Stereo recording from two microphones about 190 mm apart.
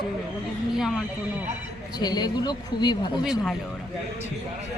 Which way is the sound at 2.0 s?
20° left (ahead or behind).